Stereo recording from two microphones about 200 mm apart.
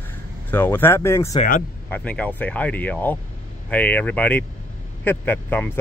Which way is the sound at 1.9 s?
5° left (ahead or behind).